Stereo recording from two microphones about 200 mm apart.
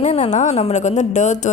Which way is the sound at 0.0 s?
35° left (ahead or behind).